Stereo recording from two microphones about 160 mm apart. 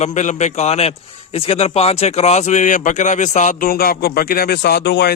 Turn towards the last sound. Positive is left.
turn(degrees=90)